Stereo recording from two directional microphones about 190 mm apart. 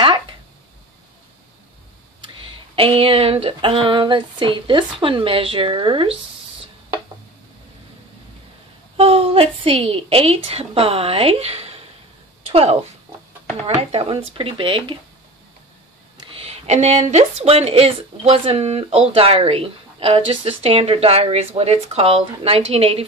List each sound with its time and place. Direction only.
0.0 s a sound: 25° right (ahead or behind)
2.7 s speech: 30° right (ahead or behind)
8.9 s speech: 30° right (ahead or behind)
12.4 s a sound: 30° right (ahead or behind)
13.7 s speech: 30° right (ahead or behind)
16.2 s speech: 30° right (ahead or behind)